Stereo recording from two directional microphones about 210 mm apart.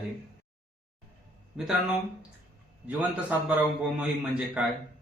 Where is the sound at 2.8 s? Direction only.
5° right (ahead or behind).